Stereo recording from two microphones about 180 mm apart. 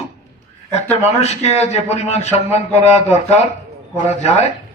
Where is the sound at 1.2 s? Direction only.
35° left (ahead or behind).